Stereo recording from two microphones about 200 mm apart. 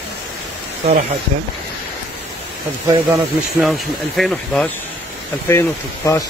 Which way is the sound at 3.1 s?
Centre (ahead or behind).